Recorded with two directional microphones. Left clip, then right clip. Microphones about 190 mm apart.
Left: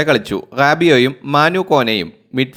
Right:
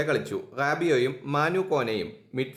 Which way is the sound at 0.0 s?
35° left (ahead or behind).